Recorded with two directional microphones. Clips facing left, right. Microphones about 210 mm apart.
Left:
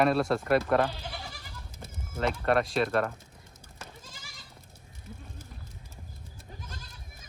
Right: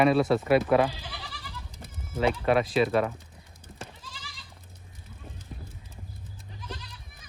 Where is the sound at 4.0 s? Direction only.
45° left (ahead or behind).